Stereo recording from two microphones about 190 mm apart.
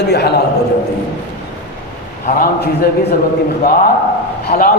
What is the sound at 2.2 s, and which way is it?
Speech, 55° left (ahead or behind).